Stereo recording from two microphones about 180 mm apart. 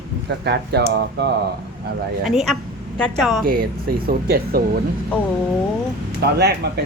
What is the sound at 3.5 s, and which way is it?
Speech, 55° right (ahead or behind).